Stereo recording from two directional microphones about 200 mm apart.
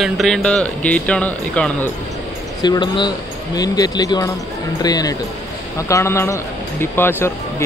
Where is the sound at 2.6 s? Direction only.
20° left (ahead or behind).